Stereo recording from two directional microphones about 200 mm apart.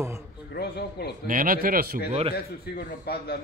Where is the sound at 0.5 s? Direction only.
55° left (ahead or behind).